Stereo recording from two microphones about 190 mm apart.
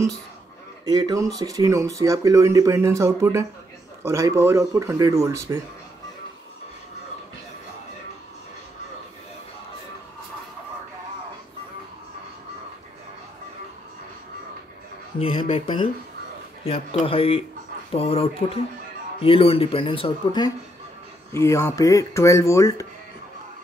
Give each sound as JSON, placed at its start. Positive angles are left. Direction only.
{"t": 0.8, "sound": "speech", "side_deg": -20}
{"t": 15.1, "sound": "speech", "side_deg": 30}
{"t": 17.0, "sound": "speech", "side_deg": 30}
{"t": 21.3, "sound": "speech", "side_deg": 15}